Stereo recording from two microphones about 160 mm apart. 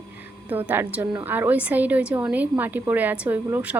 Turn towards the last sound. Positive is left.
turn(degrees=-15)  # may be behind; listen again after turning